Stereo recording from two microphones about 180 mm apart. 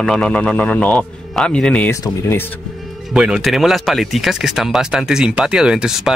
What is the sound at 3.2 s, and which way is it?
Speech, 5° right (ahead or behind).